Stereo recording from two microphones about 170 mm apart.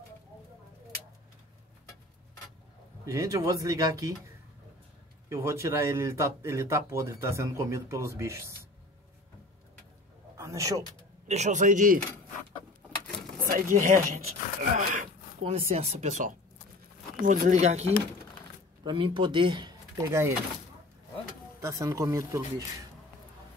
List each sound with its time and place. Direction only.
3.1 s speech: 20° right (ahead or behind)
5.3 s speech: 15° right (ahead or behind)
10.3 s a sound: 15° right (ahead or behind)
11.2 s a man's voice: 40° right (ahead or behind)
13.4 s speech: 55° right (ahead or behind)
15.5 s speech: 40° right (ahead or behind)
18.9 s speech: 30° right (ahead or behind)
21.5 s speech: 20° right (ahead or behind)